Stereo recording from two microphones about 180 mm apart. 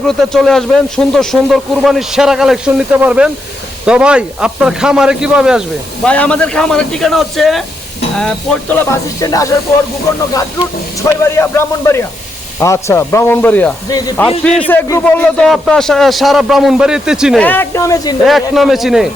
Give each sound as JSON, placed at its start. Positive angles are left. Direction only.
{"t": 0.2, "sound": "speech", "side_deg": 0}
{"t": 11.0, "sound": "speech", "side_deg": 15}
{"t": 17.4, "sound": "speech", "side_deg": 10}
{"t": 18.3, "sound": "speech", "side_deg": 0}